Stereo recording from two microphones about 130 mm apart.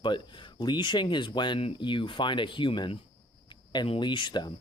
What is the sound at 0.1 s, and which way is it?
Speech, 35° left (ahead or behind).